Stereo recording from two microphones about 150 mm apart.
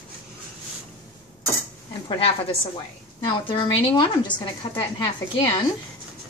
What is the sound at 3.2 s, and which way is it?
A woman's voice, 35° left (ahead or behind).